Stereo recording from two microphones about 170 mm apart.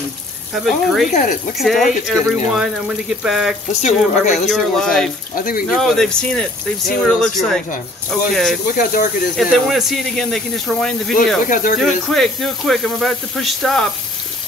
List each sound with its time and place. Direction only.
0.7 s speech: centre (ahead or behind)
1.1 s speech: 50° left (ahead or behind)
1.6 s speech: centre (ahead or behind)
3.8 s speech: 45° left (ahead or behind)
4.5 s speech: 5° left (ahead or behind)
5.3 s speech: 55° left (ahead or behind)
5.7 s speech: 5° left (ahead or behind)
8.7 s speech: 50° left (ahead or behind)
9.4 s speech: centre (ahead or behind)
11.4 s speech: 50° left (ahead or behind)
11.8 s speech: centre (ahead or behind)